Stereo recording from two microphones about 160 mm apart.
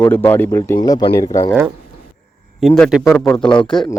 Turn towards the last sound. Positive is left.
turn(degrees=5)  # may be behind; listen again after turning